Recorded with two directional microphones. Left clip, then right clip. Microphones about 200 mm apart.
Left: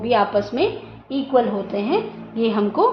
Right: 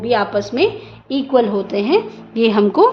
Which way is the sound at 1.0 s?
55° right (ahead or behind).